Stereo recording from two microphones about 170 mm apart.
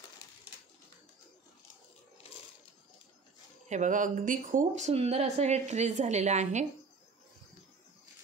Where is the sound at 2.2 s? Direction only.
35° left (ahead or behind).